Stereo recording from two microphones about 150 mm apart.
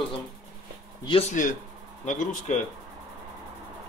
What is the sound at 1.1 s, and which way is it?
Speech, 40° left (ahead or behind).